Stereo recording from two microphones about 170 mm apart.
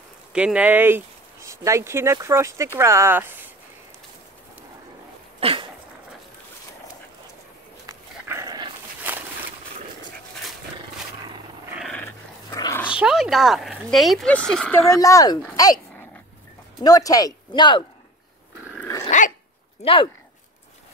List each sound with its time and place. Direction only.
0.3 s speech: 5° right (ahead or behind)
5.4 s dog: 30° right (ahead or behind)
7.8 s dog: 20° right (ahead or behind)
9.1 s a sound: 10° right (ahead or behind)
11.7 s dog: centre (ahead or behind)
12.4 s dog: 20° left (ahead or behind)
12.8 s speech: 5° right (ahead or behind)
14.9 s speech: 20° left (ahead or behind)
18.8 s dog: 20° left (ahead or behind)
19.0 s dog: 45° left (ahead or behind)
19.8 s speech: 30° left (ahead or behind)